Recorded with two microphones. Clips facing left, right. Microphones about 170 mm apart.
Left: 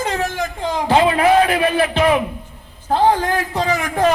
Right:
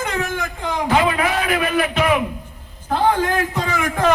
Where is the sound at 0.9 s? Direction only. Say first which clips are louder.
Left 5 dB; 30° left (ahead or behind).